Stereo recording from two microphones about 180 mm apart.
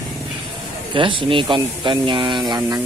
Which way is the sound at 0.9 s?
30° right (ahead or behind).